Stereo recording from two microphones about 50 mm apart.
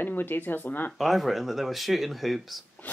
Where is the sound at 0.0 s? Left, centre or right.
Left.